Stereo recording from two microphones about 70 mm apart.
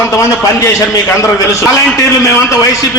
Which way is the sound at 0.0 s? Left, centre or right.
Left.